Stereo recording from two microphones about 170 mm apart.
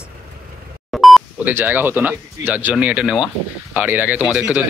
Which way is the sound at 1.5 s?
10° right (ahead or behind).